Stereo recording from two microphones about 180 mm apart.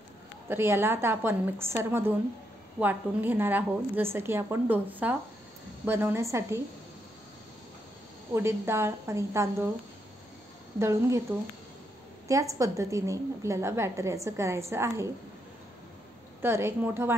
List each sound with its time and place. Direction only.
0.5 s a woman's voice: 15° right (ahead or behind)
8.3 s a woman's voice: 15° right (ahead or behind)
10.8 s a woman's voice: 15° right (ahead or behind)
16.3 s a woman's voice: 15° right (ahead or behind)